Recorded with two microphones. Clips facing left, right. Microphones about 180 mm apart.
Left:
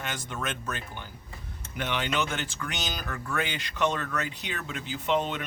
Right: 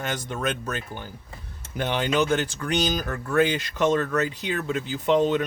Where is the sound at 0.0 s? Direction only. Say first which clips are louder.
Right 6 dB; 40° right (ahead or behind).